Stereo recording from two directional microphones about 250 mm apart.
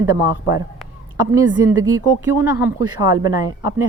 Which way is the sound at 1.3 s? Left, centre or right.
Centre.